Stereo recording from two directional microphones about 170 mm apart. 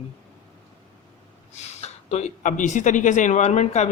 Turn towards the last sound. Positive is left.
turn(degrees=40)  # may be behind; listen again after turning